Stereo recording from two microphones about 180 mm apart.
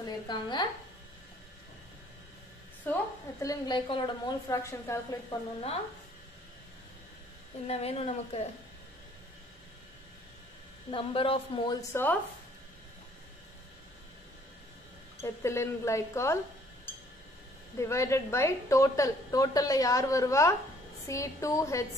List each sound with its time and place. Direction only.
0.0 s a woman's voice: 25° left (ahead or behind)
2.8 s a woman's voice: 15° left (ahead or behind)
7.6 s a woman's voice: 35° left (ahead or behind)
10.9 s a woman's voice: 30° left (ahead or behind)
11.9 s a woman's voice: 10° left (ahead or behind)
15.2 s a woman's voice: 15° left (ahead or behind)
17.7 s a woman's voice: 15° left (ahead or behind)